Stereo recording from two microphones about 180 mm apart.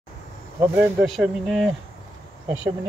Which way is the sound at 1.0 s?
Centre (ahead or behind).